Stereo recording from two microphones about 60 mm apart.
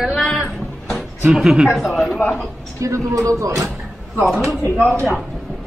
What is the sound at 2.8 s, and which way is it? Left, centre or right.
Speech, right.